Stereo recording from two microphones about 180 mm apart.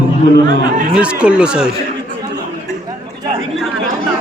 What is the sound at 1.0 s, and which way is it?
Speech, 5° right (ahead or behind).